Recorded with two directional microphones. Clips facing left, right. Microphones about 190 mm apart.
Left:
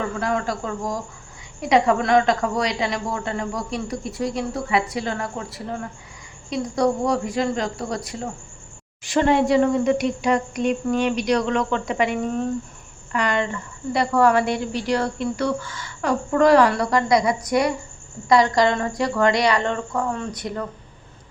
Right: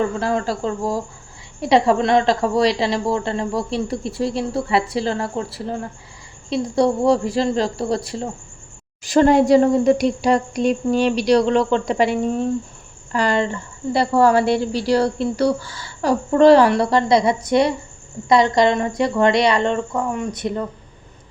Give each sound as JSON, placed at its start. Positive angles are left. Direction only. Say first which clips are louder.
{"t": 0.2, "sound": "a woman's voice", "louder": "right 3 dB", "side_deg": -30}